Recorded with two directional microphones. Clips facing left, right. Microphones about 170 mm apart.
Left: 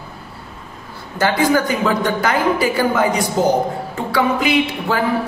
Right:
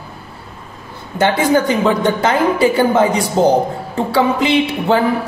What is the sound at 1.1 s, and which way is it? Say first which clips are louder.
A woman's voice: right 2 dB; 25° right (ahead or behind).